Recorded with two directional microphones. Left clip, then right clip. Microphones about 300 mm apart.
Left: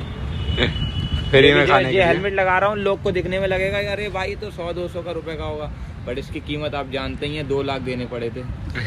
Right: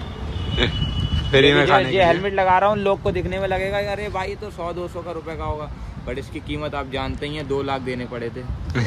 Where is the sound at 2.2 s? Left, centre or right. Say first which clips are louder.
Right 1 dB; right.